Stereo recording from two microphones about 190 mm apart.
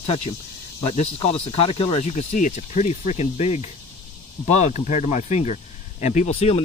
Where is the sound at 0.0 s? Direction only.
30° left (ahead or behind).